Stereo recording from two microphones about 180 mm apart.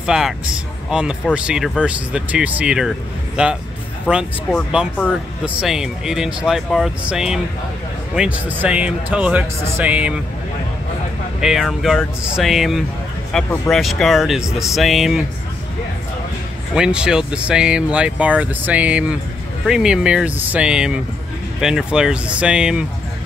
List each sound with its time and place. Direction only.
0.0 s speech: 5° right (ahead or behind)
5.4 s speech: 5° right (ahead or behind)
11.4 s speech: centre (ahead or behind)
16.7 s speech: 5° right (ahead or behind)